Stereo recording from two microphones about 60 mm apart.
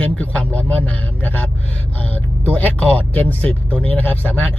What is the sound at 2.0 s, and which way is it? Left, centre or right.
Vehicle, left.